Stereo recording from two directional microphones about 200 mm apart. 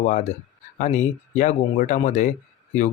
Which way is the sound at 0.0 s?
40° left (ahead or behind).